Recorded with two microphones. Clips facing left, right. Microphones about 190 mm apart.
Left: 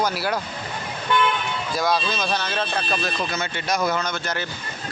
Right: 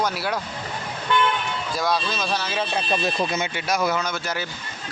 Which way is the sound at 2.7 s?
25° right (ahead or behind).